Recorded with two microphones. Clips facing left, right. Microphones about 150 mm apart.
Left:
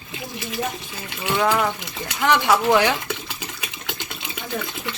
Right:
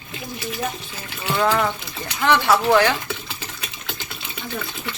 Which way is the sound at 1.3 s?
10° left (ahead or behind).